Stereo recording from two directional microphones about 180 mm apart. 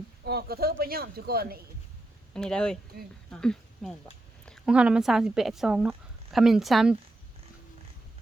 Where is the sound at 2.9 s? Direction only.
55° right (ahead or behind).